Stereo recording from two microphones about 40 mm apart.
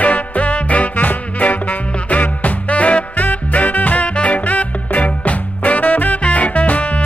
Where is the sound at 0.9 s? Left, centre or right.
Left.